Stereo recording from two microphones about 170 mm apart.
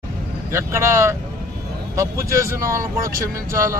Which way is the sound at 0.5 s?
15° right (ahead or behind).